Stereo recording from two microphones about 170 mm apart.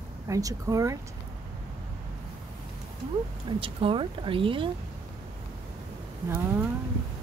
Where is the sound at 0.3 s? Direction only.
20° right (ahead or behind).